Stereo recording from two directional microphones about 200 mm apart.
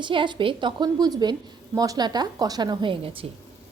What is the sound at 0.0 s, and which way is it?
A woman's voice, 25° right (ahead or behind).